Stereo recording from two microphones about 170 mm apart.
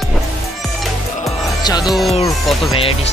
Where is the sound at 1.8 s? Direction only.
Centre (ahead or behind).